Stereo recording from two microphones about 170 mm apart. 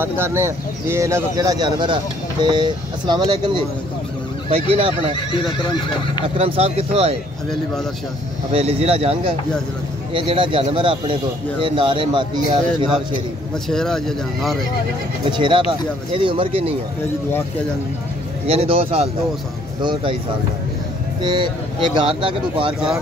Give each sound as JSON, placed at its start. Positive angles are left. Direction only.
{"t": 0.0, "sound": "speech", "side_deg": -15}
{"t": 5.1, "sound": "speech", "side_deg": 30}
{"t": 6.3, "sound": "speech", "side_deg": -35}
{"t": 8.5, "sound": "speech", "side_deg": -35}
{"t": 13.7, "sound": "speech", "side_deg": 5}
{"t": 15.3, "sound": "speech", "side_deg": -30}
{"t": 18.5, "sound": "speech", "side_deg": -35}
{"t": 21.2, "sound": "speech", "side_deg": -25}